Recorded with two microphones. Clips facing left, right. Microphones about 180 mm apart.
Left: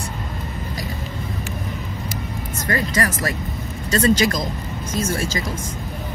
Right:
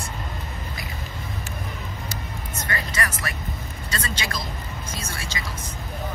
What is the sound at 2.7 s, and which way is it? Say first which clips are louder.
Speech: left 8 dB; 40° left (ahead or behind).